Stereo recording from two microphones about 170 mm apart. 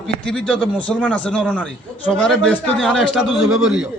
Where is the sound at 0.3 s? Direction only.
5° left (ahead or behind).